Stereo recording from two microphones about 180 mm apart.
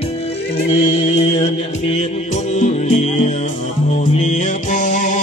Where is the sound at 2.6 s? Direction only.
40° left (ahead or behind).